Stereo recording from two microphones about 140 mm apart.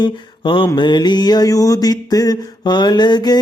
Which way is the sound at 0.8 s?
35° left (ahead or behind).